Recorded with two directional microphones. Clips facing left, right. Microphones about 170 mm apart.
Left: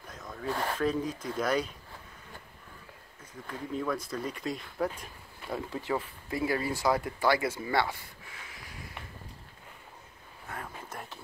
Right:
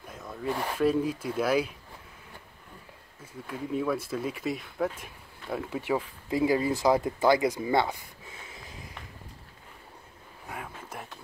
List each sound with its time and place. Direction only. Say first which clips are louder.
0.1 s speech: right 3 dB; 5° right (ahead or behind)
3.4 s speech: right 4 dB; 5° right (ahead or behind)
5.9 s speech: right 4 dB; 15° right (ahead or behind)
10.5 s a sound: right 1 dB; 5° right (ahead or behind)